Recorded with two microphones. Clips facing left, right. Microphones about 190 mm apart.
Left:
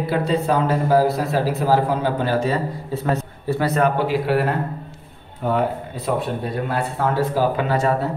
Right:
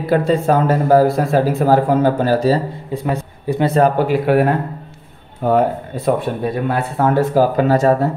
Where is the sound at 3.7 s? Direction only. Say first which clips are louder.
Right 6 dB; 35° right (ahead or behind).